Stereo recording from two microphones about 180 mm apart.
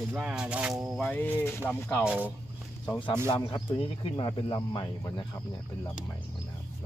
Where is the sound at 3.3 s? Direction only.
25° left (ahead or behind).